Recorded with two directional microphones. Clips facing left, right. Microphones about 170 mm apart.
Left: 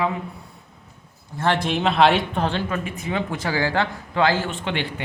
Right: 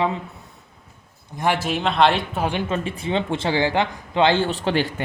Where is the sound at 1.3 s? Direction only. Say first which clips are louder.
Even; 10° right (ahead or behind).